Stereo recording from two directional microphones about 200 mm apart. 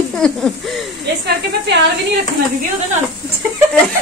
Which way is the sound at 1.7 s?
60° right (ahead or behind).